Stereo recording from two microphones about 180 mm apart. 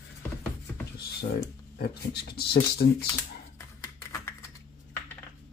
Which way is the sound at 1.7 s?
60° left (ahead or behind).